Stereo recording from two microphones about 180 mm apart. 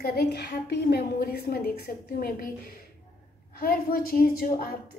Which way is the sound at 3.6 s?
55° left (ahead or behind).